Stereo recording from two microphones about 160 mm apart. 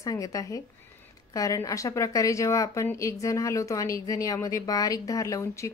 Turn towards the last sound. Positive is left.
turn(degrees=20)  # may be behind; listen again after turning